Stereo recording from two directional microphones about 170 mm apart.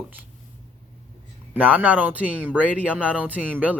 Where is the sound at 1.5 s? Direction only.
10° right (ahead or behind).